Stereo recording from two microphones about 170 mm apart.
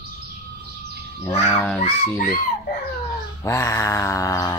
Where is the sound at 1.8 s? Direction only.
55° left (ahead or behind).